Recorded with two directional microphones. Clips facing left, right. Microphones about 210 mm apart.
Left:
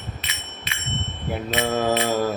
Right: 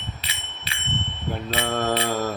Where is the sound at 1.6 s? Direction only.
10° left (ahead or behind).